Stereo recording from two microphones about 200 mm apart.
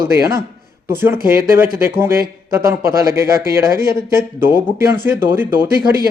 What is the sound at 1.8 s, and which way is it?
A man's voice, 10° right (ahead or behind).